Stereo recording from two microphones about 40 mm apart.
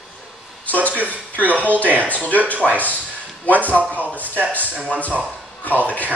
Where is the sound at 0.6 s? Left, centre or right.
Left.